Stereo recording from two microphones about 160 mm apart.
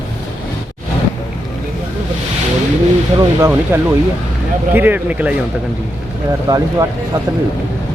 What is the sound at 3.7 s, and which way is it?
Speech, 15° right (ahead or behind).